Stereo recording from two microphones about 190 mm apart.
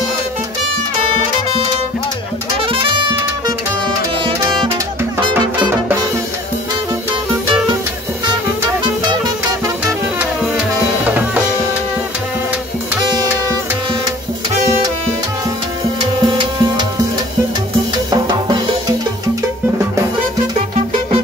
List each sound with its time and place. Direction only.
2.6 s music: 30° right (ahead or behind)
10.7 s music: 10° right (ahead or behind)
16.2 s music: 25° right (ahead or behind)
18.1 s music: 20° right (ahead or behind)